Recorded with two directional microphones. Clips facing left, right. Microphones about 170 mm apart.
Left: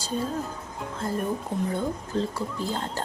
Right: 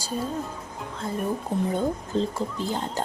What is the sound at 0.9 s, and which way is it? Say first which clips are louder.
Speech: left 2 dB; centre (ahead or behind).